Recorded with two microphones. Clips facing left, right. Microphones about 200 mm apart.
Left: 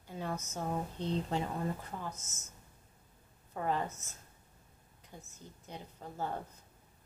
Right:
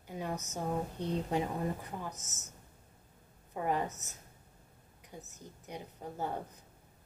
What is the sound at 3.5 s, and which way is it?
Speech, 15° right (ahead or behind).